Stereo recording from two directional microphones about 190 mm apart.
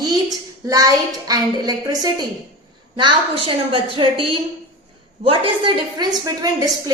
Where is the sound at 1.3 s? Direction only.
20° right (ahead or behind).